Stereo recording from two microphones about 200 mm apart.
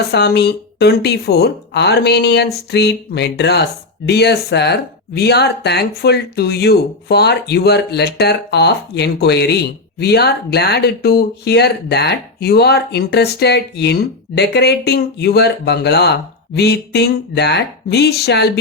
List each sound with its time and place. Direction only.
0.1 s speech: 55° left (ahead or behind)